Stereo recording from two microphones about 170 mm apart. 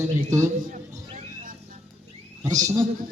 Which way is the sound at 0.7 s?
50° right (ahead or behind).